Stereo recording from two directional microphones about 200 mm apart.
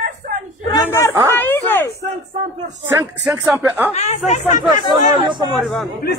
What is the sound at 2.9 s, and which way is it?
Speech, 10° right (ahead or behind).